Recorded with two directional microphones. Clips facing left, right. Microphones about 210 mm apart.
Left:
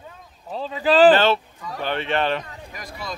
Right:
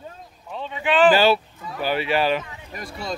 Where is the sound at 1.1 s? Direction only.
10° right (ahead or behind).